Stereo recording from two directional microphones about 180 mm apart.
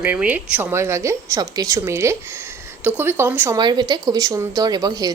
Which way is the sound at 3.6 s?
25° right (ahead or behind).